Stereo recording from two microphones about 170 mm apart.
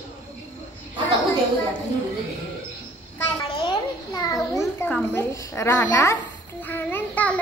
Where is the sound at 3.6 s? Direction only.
25° left (ahead or behind).